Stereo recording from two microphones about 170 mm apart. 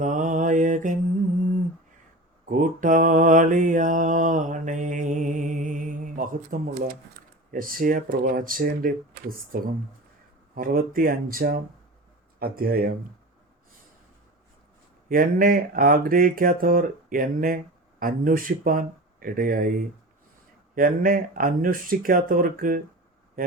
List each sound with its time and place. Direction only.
0.0 s mantra: 50° right (ahead or behind)
2.5 s mantra: 50° right (ahead or behind)
7.5 s speech: 55° right (ahead or behind)
15.1 s speech: 55° right (ahead or behind)
20.7 s speech: 55° right (ahead or behind)